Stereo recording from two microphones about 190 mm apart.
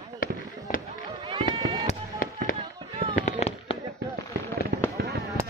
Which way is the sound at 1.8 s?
45° left (ahead or behind).